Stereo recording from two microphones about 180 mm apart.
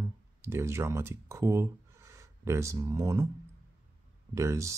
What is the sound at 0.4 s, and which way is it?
Speech, 15° right (ahead or behind).